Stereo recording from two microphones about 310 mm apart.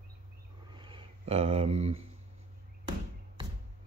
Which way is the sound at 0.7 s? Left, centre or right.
Centre.